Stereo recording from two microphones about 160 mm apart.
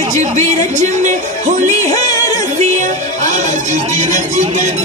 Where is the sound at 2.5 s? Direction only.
50° right (ahead or behind).